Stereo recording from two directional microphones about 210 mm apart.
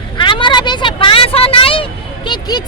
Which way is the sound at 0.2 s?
20° left (ahead or behind).